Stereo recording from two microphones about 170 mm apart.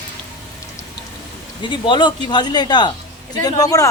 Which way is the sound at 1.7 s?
30° left (ahead or behind).